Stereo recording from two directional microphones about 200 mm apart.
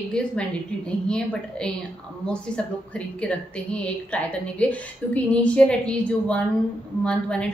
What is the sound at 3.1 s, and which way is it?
A woman's voice, 5° left (ahead or behind).